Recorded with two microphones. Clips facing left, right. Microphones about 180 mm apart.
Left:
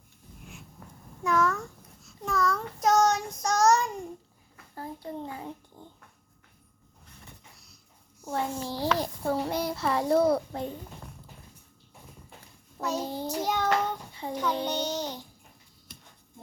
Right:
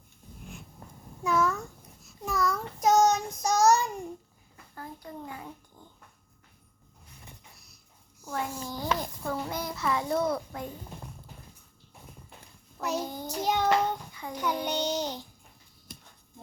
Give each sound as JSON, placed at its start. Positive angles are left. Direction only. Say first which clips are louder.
{"t": 1.2, "sound": "a child's voice", "louder": "left 1 dB", "side_deg": -5}
{"t": 2.2, "sound": "child singing", "louder": "left 1 dB", "side_deg": -10}
{"t": 4.7, "sound": "a child's voice", "louder": "left 5 dB", "side_deg": 30}
{"t": 8.2, "sound": "a child's voice", "louder": "left 3 dB", "side_deg": 30}
{"t": 13.0, "sound": "child singing", "louder": "left 3 dB", "side_deg": 30}
{"t": 13.4, "sound": "a child's voice", "louder": "right 3 dB", "side_deg": -15}
{"t": 14.1, "sound": "child singing", "louder": "left 4 dB", "side_deg": 30}
{"t": 14.6, "sound": "a child's voice", "louder": "even", "side_deg": -15}